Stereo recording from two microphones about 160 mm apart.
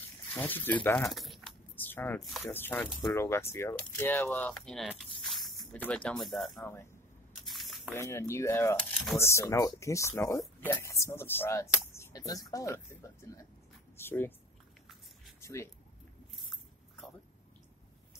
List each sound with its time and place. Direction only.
0.3 s speech: 10° left (ahead or behind)
1.1 s speech: centre (ahead or behind)
1.8 s speech: 10° left (ahead or behind)
6.6 s speech: 15° left (ahead or behind)
7.4 s squish: centre (ahead or behind)
7.9 s speech: 15° left (ahead or behind)
13.9 s a sound: 15° left (ahead or behind)
15.4 s speech: 15° left (ahead or behind)
16.4 s a sound: centre (ahead or behind)